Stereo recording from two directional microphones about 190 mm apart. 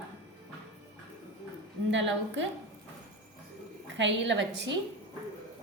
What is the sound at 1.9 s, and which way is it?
Speech, 75° right (ahead or behind).